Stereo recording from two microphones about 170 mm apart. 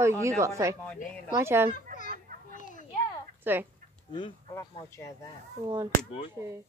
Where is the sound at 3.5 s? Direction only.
10° right (ahead or behind).